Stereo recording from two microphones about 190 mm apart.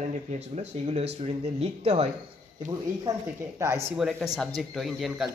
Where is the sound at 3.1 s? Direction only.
20° right (ahead or behind).